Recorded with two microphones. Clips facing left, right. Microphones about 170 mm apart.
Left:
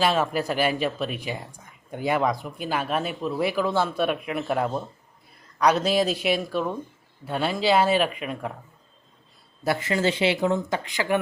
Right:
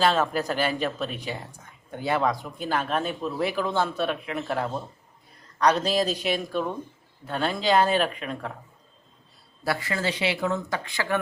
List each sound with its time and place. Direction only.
0.0 s speech: 10° left (ahead or behind)
9.6 s speech: 20° left (ahead or behind)